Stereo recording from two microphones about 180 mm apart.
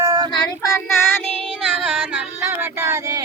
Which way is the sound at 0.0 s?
15° right (ahead or behind).